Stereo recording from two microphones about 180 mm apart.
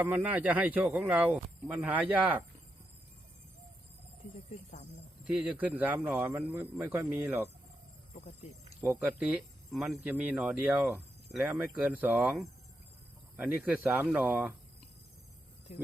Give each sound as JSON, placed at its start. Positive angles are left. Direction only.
{"t": 0.0, "sound": "speech", "side_deg": -10}
{"t": 5.2, "sound": "speech", "side_deg": -5}
{"t": 8.1, "sound": "speech", "side_deg": 35}
{"t": 8.8, "sound": "speech", "side_deg": -10}